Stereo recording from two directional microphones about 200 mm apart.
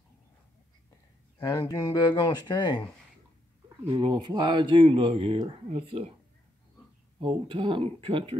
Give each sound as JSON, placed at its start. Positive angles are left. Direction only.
{"t": 1.4, "sound": "speech", "side_deg": 20}
{"t": 3.6, "sound": "speech", "side_deg": -20}
{"t": 7.2, "sound": "speech", "side_deg": -25}